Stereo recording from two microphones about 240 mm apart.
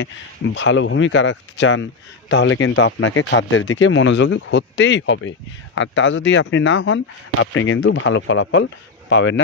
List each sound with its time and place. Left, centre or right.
0.6 s a man's voice: left